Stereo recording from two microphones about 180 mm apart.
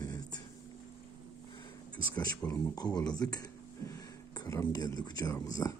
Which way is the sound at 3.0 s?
20° left (ahead or behind).